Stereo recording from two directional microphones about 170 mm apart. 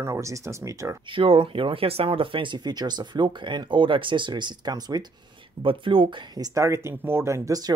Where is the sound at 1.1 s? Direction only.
30° right (ahead or behind).